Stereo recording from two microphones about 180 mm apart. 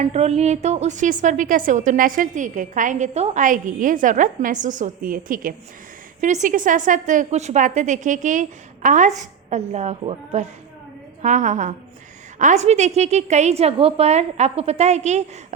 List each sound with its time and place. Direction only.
0.0 s a woman's voice: 35° right (ahead or behind)